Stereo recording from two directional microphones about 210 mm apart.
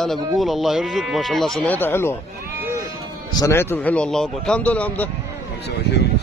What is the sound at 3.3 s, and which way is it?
Speech, 10° left (ahead or behind).